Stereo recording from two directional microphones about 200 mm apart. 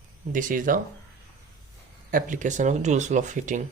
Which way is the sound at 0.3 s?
40° right (ahead or behind).